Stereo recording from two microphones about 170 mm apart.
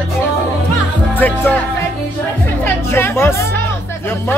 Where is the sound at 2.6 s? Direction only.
15° left (ahead or behind).